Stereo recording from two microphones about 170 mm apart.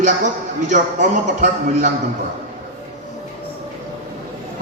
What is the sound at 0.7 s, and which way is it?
A man's voice, 45° right (ahead or behind).